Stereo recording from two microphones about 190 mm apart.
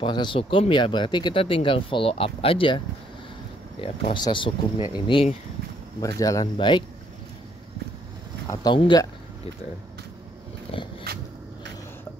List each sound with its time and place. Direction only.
0.0 s speech: 25° left (ahead or behind)
3.8 s speech: 25° left (ahead or behind)
8.5 s speech: 25° left (ahead or behind)
11.1 s a sound: 55° right (ahead or behind)